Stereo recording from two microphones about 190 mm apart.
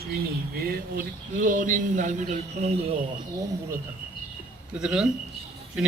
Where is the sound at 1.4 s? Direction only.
45° right (ahead or behind).